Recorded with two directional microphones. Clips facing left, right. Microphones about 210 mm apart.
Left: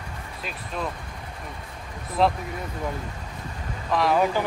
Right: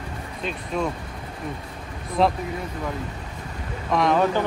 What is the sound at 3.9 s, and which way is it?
Speech, 5° left (ahead or behind).